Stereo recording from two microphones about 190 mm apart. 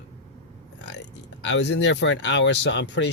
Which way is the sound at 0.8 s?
65° left (ahead or behind).